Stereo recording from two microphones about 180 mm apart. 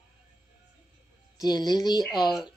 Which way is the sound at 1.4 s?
20° left (ahead or behind).